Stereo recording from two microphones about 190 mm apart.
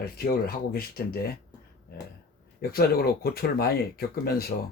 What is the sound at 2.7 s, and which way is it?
Speech, 55° left (ahead or behind).